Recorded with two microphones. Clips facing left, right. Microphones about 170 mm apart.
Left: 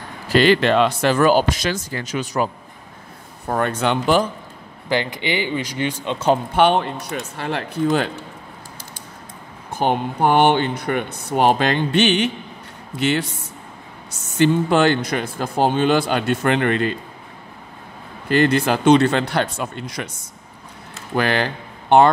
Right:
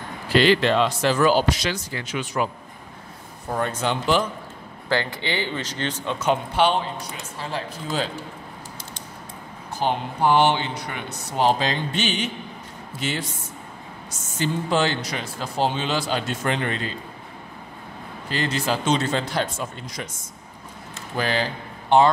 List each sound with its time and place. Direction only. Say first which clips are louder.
0.3 s speech: left 3 dB; 50° left (ahead or behind)
3.4 s speech: left 4 dB; 65° left (ahead or behind)
4.8 s speech: left 3 dB; 15° left (ahead or behind)
6.1 s speech: left 5 dB; 35° left (ahead or behind)
6.5 s speech: left 4 dB; 60° left (ahead or behind)
9.7 s speech: left 4 dB; 55° left (ahead or behind)
14.4 s speech: left 7 dB; 60° left (ahead or behind)
18.3 s speech: left 8 dB; 60° left (ahead or behind)
21.2 s speech: left 4 dB; 65° left (ahead or behind)